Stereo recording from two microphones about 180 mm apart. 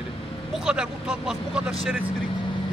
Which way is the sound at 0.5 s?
5° right (ahead or behind).